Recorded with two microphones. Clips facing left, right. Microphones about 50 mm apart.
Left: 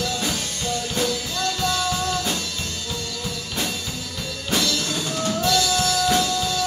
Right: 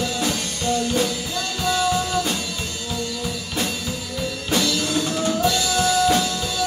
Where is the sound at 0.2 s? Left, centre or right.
Centre.